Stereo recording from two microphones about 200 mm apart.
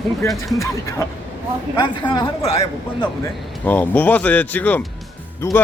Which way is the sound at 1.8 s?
25° left (ahead or behind).